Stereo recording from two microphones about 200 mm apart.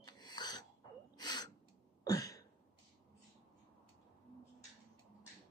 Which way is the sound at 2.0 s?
15° left (ahead or behind).